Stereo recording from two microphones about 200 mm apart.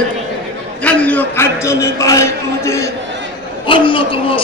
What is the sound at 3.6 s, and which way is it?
Speech, 25° left (ahead or behind).